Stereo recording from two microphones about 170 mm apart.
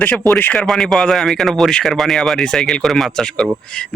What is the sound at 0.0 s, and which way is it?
A man's voice, 10° left (ahead or behind).